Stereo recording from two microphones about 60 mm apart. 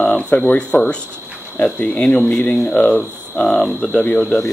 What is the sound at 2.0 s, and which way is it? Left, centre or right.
Speech, centre.